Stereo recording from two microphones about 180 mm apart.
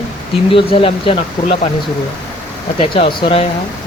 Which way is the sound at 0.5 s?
30° left (ahead or behind).